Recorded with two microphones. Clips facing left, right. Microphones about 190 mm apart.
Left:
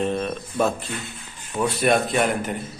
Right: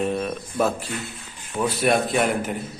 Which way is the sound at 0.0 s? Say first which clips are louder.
Even; 5° right (ahead or behind).